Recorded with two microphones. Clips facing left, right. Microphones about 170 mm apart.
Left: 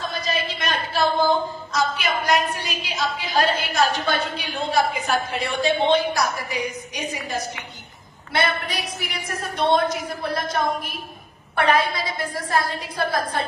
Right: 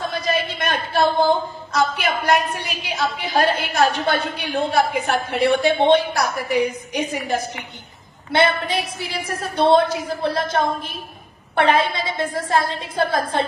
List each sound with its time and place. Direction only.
0.0 s a man's voice: 55° right (ahead or behind)
8.3 s a woman's voice: 25° right (ahead or behind)